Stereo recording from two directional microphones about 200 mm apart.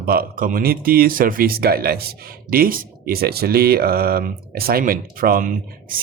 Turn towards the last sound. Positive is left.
turn(degrees=-45)  # may be behind; listen again after turning